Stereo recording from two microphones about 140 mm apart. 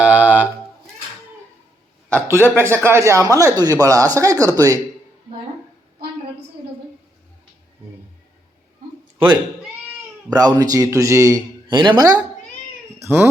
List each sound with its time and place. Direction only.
0.0 s a sound: 10° right (ahead or behind)
2.2 s speech: 15° right (ahead or behind)
9.1 s speech: 35° right (ahead or behind)
13.0 s cat: 15° right (ahead or behind)